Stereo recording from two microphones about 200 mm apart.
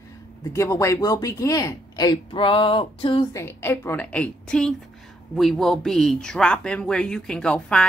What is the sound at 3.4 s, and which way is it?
A woman's voice, 10° left (ahead or behind).